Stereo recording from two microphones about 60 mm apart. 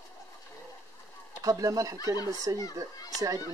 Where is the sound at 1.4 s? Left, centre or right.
Right.